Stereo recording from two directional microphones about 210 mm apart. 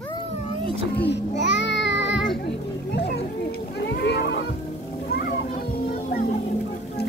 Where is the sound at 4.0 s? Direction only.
50° left (ahead or behind).